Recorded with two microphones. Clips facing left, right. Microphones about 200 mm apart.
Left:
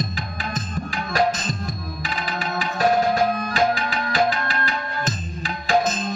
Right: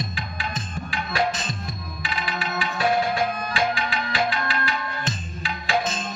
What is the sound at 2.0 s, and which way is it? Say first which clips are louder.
Music: left 1 dB; 40° left (ahead or behind).